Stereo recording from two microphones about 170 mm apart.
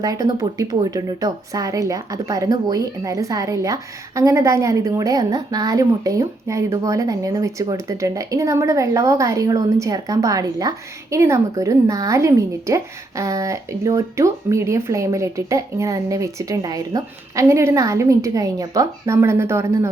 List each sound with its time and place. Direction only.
0.0 s a woman's voice: 20° right (ahead or behind)